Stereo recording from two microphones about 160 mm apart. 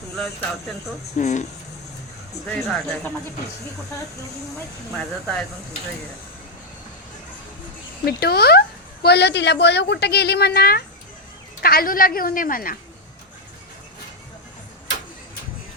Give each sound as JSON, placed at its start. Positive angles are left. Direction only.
{"t": 1.1, "sound": "speech", "side_deg": 45}
{"t": 2.5, "sound": "speech", "side_deg": 5}
{"t": 4.9, "sound": "speech", "side_deg": 5}
{"t": 8.0, "sound": "a woman's voice", "side_deg": 80}